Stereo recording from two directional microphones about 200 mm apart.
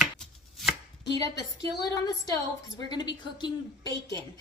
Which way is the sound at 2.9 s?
20° left (ahead or behind).